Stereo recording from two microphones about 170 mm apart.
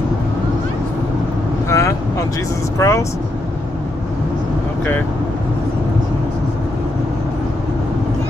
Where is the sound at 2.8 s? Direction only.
15° left (ahead or behind).